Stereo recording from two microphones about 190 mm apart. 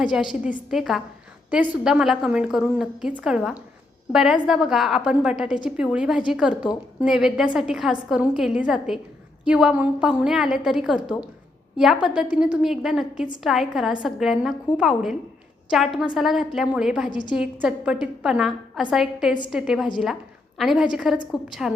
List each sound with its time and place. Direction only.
0.0 s a woman's voice: 5° right (ahead or behind)
12.0 s a woman's voice: 5° right (ahead or behind)
17.1 s a woman's voice: 25° left (ahead or behind)
17.3 s a woman's voice: 5° right (ahead or behind)